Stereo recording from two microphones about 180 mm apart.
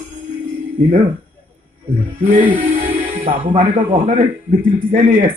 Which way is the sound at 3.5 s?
45° right (ahead or behind).